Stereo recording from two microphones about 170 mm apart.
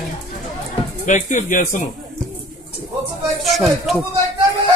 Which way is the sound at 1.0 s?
50° left (ahead or behind).